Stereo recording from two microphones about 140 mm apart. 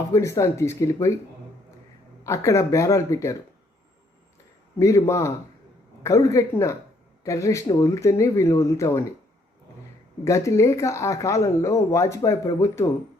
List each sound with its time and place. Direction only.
0.1 s speech: 20° left (ahead or behind)
2.2 s speech: 20° left (ahead or behind)
4.8 s speech: 20° left (ahead or behind)
10.2 s speech: 20° left (ahead or behind)